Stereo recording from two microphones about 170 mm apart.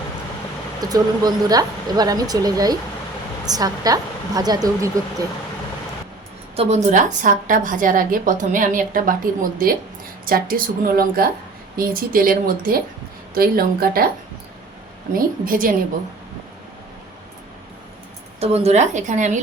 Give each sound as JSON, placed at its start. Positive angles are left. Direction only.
{"t": 0.8, "sound": "speech", "side_deg": -20}
{"t": 6.6, "sound": "a woman's voice", "side_deg": -40}
{"t": 15.1, "sound": "a woman's voice", "side_deg": -55}
{"t": 18.3, "sound": "a woman's voice", "side_deg": -40}